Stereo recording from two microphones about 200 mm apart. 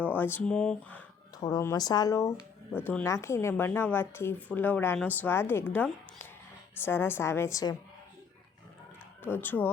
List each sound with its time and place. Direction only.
0.0 s a woman's voice: 10° left (ahead or behind)
1.4 s a woman's voice: 20° left (ahead or behind)
9.2 s a woman's voice: 10° left (ahead or behind)